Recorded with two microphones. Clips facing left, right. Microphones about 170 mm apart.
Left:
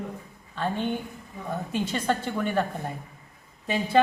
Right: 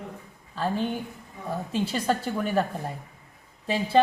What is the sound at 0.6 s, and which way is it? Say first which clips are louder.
Speech: right 1 dB; centre (ahead or behind).